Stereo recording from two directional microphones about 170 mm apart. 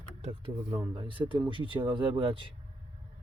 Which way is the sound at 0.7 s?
25° right (ahead or behind).